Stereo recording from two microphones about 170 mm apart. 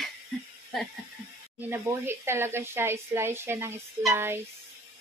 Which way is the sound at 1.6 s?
15° right (ahead or behind).